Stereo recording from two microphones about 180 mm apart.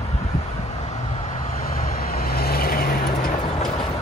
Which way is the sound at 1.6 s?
50° left (ahead or behind).